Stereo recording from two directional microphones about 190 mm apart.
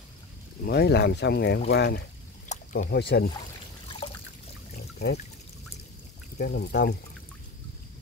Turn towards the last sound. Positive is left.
turn(degrees=55)  # may be behind; listen again after turning